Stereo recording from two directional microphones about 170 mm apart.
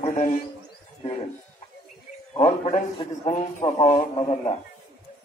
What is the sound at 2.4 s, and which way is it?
A man's voice, 40° left (ahead or behind).